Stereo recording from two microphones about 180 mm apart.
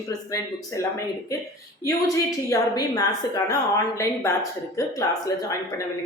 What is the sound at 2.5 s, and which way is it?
Speech, 20° left (ahead or behind).